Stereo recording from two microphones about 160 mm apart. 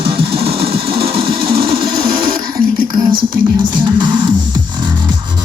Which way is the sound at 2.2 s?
65° right (ahead or behind).